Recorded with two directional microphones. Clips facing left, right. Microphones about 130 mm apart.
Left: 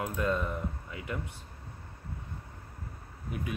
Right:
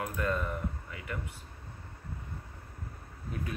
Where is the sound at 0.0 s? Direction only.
20° left (ahead or behind).